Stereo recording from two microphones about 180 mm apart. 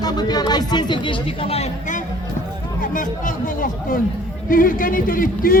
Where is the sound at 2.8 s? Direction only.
50° left (ahead or behind).